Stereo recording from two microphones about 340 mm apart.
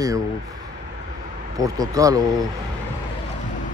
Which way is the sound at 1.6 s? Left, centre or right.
Centre.